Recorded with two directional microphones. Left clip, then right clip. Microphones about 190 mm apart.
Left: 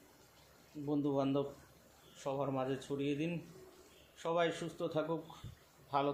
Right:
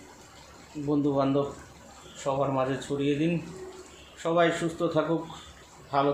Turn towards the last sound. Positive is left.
turn(degrees=30)  # may be behind; listen again after turning